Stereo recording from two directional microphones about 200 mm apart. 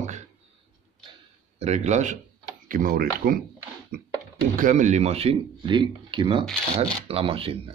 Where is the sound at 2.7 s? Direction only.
45° right (ahead or behind).